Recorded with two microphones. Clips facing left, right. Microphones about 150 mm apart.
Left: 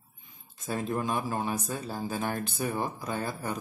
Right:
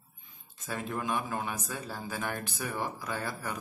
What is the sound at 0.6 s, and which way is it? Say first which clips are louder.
Speech: left 4 dB; 35° left (ahead or behind).